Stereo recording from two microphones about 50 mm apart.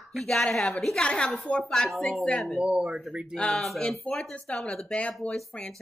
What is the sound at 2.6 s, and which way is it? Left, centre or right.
Speech, right.